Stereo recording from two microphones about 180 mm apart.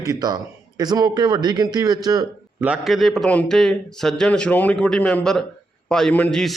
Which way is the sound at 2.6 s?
5° right (ahead or behind).